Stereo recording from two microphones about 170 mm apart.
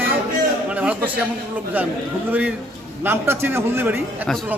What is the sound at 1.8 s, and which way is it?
Speech, 10° right (ahead or behind).